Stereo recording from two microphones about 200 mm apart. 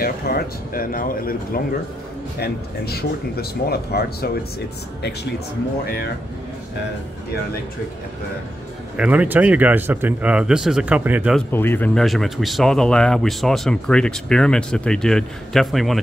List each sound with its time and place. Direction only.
0.0 s speech: 50° left (ahead or behind)
8.9 s speech: 5° right (ahead or behind)
11.3 s speech: 10° left (ahead or behind)